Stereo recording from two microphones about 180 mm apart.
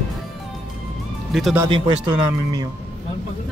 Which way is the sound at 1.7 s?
30° right (ahead or behind).